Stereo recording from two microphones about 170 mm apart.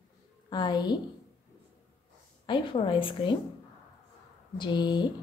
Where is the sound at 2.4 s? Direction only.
30° left (ahead or behind).